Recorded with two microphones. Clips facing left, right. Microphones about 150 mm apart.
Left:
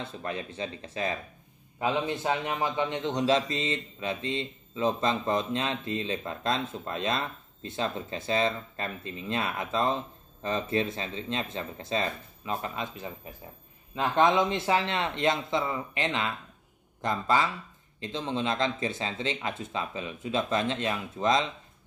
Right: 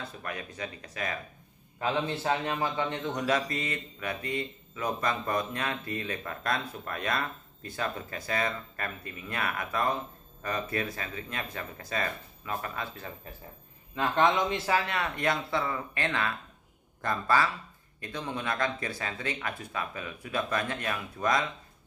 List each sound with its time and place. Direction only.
0.0 s a man's voice: 25° left (ahead or behind)
1.8 s a man's voice: 15° left (ahead or behind)